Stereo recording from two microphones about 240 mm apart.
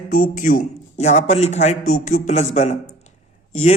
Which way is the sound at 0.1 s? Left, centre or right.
Left.